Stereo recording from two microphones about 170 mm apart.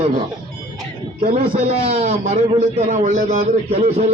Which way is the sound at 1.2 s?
35° right (ahead or behind).